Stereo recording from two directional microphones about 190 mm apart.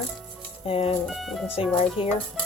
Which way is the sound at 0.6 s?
30° left (ahead or behind).